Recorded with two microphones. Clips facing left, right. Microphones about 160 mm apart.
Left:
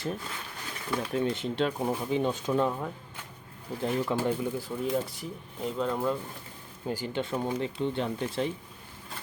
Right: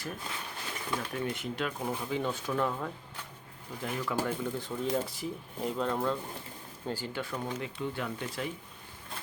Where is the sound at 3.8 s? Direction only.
30° left (ahead or behind).